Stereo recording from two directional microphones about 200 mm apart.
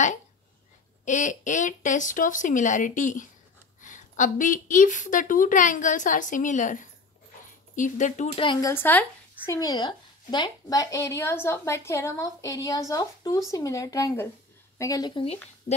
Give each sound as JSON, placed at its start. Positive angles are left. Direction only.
{"t": 1.0, "sound": "a woman's voice", "side_deg": 40}
{"t": 8.5, "sound": "a woman's voice", "side_deg": 15}